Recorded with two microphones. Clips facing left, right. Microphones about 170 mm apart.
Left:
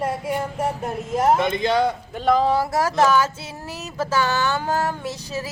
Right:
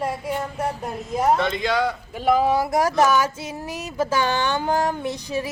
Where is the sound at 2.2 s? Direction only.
10° right (ahead or behind).